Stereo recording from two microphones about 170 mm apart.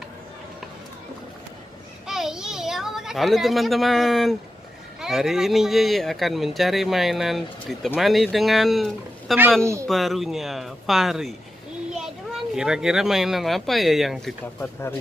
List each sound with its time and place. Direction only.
2.0 s a child's voice: centre (ahead or behind)
9.6 s speech: 15° right (ahead or behind)
9.8 s speech: centre (ahead or behind)
14.6 s speech: 15° left (ahead or behind)